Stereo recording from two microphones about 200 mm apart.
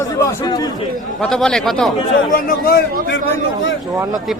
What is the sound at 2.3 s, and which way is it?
Speech, 45° left (ahead or behind).